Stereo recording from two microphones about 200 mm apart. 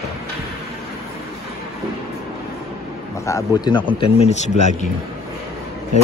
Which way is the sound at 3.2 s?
20° left (ahead or behind).